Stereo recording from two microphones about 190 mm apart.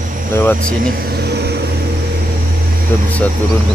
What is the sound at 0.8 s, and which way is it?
Vehicle, 60° right (ahead or behind).